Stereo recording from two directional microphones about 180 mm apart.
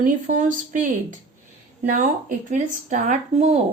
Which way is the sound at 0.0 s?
45° right (ahead or behind).